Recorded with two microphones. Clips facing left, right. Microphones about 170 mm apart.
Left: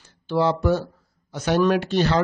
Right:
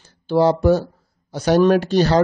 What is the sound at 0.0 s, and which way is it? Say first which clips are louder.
Speech: right 5 dB; 35° right (ahead or behind).